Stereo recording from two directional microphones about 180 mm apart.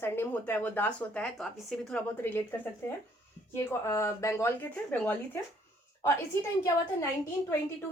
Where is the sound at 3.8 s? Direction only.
15° left (ahead or behind).